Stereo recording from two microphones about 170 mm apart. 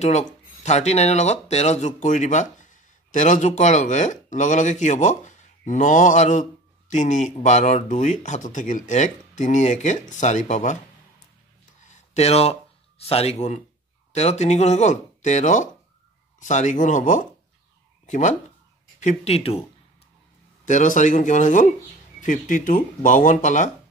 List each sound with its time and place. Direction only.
0.0 s speech: 40° left (ahead or behind)
11.8 s a sound: 45° left (ahead or behind)
13.0 s speech: 35° left (ahead or behind)
20.6 s speech: 45° left (ahead or behind)